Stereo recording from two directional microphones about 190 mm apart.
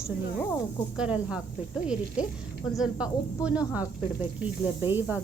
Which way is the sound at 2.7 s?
5° right (ahead or behind).